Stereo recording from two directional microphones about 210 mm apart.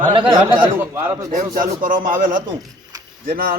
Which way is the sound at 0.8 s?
15° right (ahead or behind).